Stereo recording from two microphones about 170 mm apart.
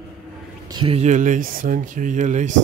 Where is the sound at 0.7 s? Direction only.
25° right (ahead or behind).